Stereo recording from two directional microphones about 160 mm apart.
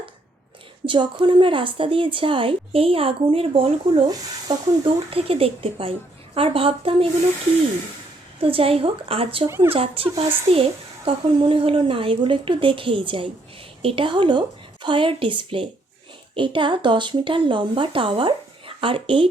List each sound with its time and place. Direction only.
0.9 s a woman's voice: 30° right (ahead or behind)
4.0 s speech: 25° right (ahead or behind)
5.1 s a woman's voice: 35° right (ahead or behind)
8.4 s a woman's voice: 35° right (ahead or behind)
9.5 s speech: 15° right (ahead or behind)
9.7 s a woman's voice: 35° right (ahead or behind)